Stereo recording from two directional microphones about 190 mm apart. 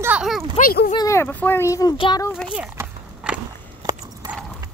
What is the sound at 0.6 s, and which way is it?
Speech, 45° left (ahead or behind).